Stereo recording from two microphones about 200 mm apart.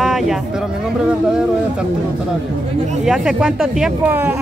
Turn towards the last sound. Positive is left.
turn(degrees=-10)  # may be behind; listen again after turning